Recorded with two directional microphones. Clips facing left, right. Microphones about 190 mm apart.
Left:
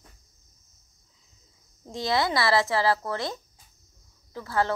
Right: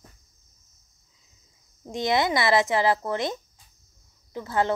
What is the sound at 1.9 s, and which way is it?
A woman's voice, 20° right (ahead or behind).